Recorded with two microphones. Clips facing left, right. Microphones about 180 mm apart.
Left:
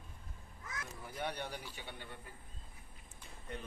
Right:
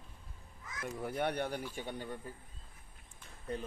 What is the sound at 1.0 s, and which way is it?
Speech, 60° right (ahead or behind).